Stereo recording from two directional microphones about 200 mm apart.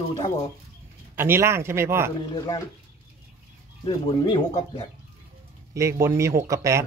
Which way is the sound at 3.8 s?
20° left (ahead or behind).